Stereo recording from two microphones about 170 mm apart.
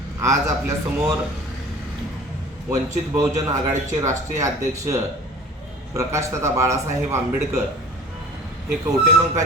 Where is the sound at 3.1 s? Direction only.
20° right (ahead or behind).